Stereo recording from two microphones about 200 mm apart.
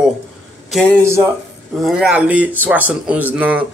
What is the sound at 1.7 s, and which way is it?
A man's voice, centre (ahead or behind).